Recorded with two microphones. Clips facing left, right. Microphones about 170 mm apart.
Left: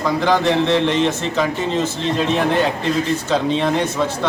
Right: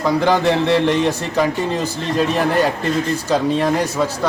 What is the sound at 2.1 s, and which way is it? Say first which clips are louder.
Speech: right 2 dB; 5° right (ahead or behind).